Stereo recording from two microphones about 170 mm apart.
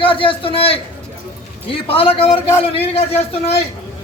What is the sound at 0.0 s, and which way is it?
A man's voice, 30° left (ahead or behind).